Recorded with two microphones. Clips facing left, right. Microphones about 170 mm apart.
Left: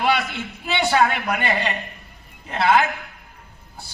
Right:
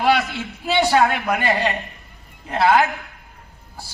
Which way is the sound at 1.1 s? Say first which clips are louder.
Right 3 dB; 50° right (ahead or behind).